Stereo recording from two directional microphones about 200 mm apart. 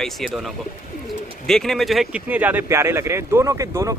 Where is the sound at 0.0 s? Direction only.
Centre (ahead or behind).